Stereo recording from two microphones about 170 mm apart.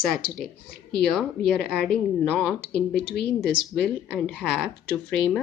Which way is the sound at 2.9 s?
85° left.